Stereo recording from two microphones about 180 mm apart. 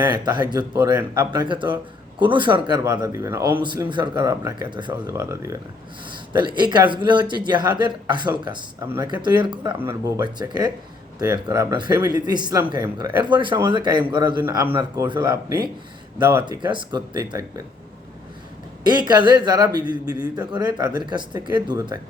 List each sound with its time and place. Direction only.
0.0 s speech: 25° right (ahead or behind)
9.7 s speech: 15° right (ahead or behind)
16.1 s speech: 10° right (ahead or behind)
16.5 s speech: 25° right (ahead or behind)
17.2 s speech: 15° right (ahead or behind)
18.9 s speech: 25° right (ahead or behind)